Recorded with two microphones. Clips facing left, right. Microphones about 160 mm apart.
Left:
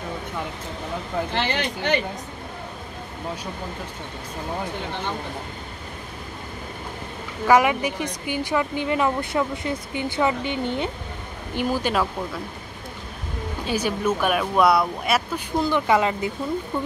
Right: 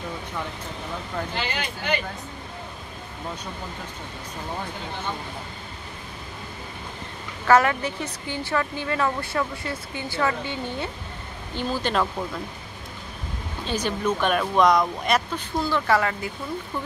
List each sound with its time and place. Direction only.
1.3 s speech: 65° left (ahead or behind)
7.4 s speech: 10° left (ahead or behind)
13.7 s speech: 10° left (ahead or behind)
15.6 s speech: 20° left (ahead or behind)